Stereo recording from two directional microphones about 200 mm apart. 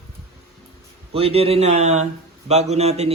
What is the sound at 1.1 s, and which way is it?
A man's voice, 30° right (ahead or behind).